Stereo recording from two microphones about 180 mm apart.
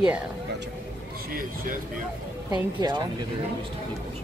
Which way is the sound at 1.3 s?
50° right (ahead or behind).